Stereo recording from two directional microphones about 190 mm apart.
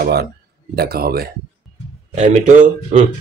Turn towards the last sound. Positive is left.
turn(degrees=-40)  # may be behind; listen again after turning